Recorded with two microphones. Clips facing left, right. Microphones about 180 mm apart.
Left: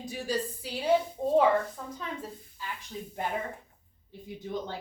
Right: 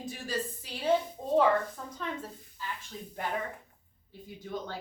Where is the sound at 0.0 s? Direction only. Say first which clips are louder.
Left 3 dB; 15° left (ahead or behind).